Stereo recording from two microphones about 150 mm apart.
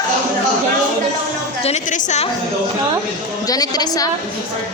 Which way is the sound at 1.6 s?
45° left (ahead or behind).